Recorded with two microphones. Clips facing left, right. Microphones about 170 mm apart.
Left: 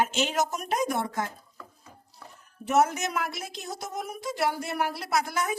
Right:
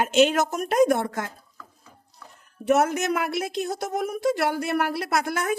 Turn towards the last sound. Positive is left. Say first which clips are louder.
# right 3 dB
turn(degrees=-60)  # may be behind; listen again after turning